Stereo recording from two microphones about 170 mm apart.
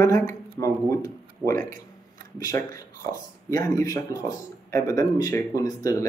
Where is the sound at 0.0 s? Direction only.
20° left (ahead or behind).